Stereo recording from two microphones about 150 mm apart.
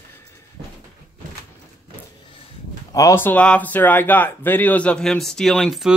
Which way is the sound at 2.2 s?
35° left (ahead or behind).